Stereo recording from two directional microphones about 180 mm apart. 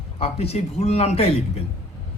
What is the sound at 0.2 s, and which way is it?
Speech, 35° left (ahead or behind).